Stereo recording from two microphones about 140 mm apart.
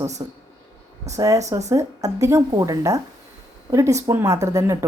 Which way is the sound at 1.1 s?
20° right (ahead or behind).